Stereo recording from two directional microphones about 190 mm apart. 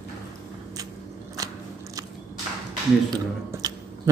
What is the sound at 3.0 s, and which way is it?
Speech, 20° right (ahead or behind).